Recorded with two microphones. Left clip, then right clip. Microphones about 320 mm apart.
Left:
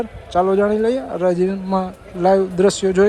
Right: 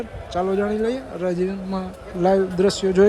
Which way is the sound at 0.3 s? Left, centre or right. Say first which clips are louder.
Left 6 dB; centre.